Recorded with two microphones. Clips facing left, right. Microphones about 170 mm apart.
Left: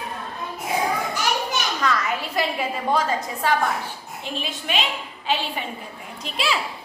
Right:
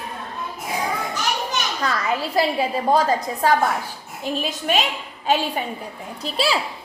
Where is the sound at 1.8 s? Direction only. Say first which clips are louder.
Right 2 dB; 35° right (ahead or behind).